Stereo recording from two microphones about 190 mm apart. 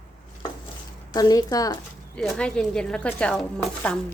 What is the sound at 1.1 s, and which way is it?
Speech, 20° left (ahead or behind).